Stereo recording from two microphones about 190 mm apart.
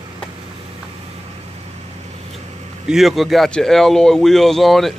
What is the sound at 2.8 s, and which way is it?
Speech, centre (ahead or behind).